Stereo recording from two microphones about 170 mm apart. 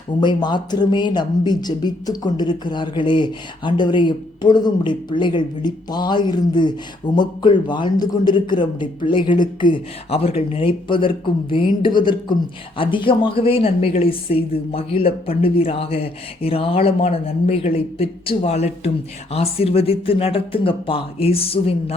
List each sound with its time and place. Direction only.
0.2 s speech: 25° left (ahead or behind)